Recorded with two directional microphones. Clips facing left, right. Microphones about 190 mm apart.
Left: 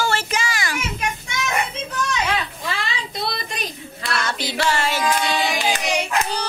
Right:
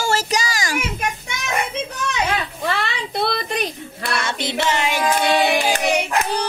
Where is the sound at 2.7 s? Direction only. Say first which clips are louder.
Right 5 dB; 60° right (ahead or behind).